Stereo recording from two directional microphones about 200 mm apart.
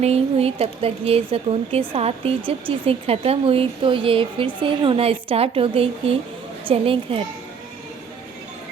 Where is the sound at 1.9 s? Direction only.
30° right (ahead or behind).